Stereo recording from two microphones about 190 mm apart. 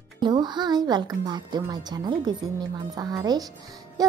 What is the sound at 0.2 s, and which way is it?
A woman's voice, 20° right (ahead or behind).